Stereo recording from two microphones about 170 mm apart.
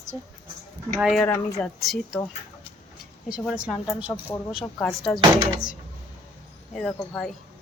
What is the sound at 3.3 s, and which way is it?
Speech, 5° right (ahead or behind).